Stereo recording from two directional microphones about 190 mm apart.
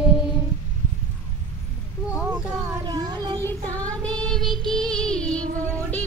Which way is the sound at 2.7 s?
20° right (ahead or behind).